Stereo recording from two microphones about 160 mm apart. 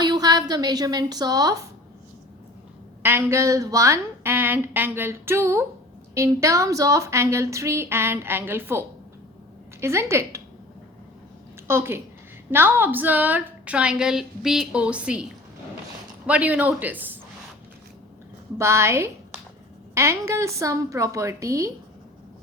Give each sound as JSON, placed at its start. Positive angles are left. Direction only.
{"t": 0.0, "sound": "a woman's voice", "side_deg": -25}
{"t": 3.0, "sound": "a woman's voice", "side_deg": -15}
{"t": 9.8, "sound": "a woman's voice", "side_deg": -15}
{"t": 11.7, "sound": "a woman's voice", "side_deg": -15}
{"t": 18.5, "sound": "a woman's voice", "side_deg": -15}